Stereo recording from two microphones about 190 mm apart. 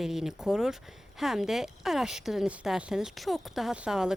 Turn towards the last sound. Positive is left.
turn(degrees=-5)  # may be behind; listen again after turning